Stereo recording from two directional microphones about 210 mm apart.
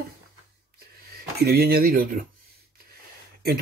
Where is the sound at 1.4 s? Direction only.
50° right (ahead or behind).